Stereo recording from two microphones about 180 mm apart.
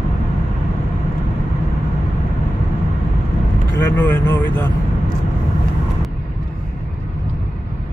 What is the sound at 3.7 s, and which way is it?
Speech, 10° left (ahead or behind).